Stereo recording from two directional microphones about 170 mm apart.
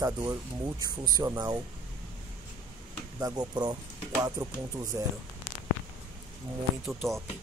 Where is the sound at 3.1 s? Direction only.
25° right (ahead or behind).